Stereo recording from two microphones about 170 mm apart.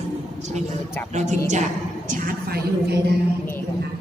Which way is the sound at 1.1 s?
45° right (ahead or behind).